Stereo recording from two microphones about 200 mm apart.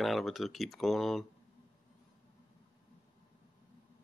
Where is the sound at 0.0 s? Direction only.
Centre (ahead or behind).